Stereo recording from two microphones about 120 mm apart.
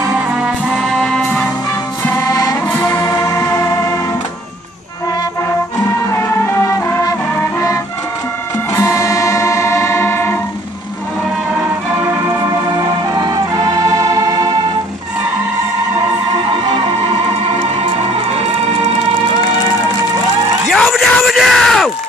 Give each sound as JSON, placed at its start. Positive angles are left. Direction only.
{"t": 0.4, "sound": "brass instrument", "side_deg": 0}
{"t": 2.0, "sound": "music", "side_deg": 25}
{"t": 6.1, "sound": "music", "side_deg": 25}
{"t": 8.7, "sound": "music", "side_deg": 25}
{"t": 12.7, "sound": "organ", "side_deg": -30}
{"t": 20.7, "sound": "yell", "side_deg": 0}